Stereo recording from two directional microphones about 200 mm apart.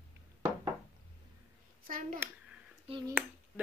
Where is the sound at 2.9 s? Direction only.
30° right (ahead or behind).